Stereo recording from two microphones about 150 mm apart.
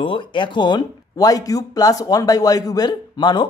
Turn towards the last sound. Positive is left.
turn(degrees=30)  # may be behind; listen again after turning